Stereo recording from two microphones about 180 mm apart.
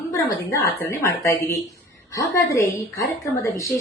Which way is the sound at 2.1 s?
20° left (ahead or behind).